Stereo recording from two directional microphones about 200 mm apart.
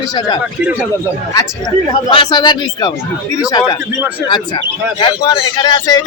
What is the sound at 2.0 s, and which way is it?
Speech, 25° left (ahead or behind).